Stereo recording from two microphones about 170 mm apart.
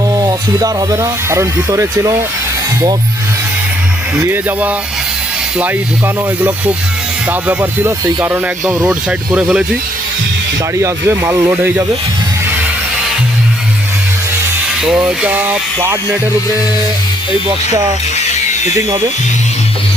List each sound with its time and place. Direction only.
0.2 s speech: 20° right (ahead or behind)
4.1 s speech: 10° right (ahead or behind)
7.3 s speech: 10° right (ahead or behind)
8.9 s speech: 5° right (ahead or behind)
10.8 s speech: 15° right (ahead or behind)
14.8 s speech: 5° right (ahead or behind)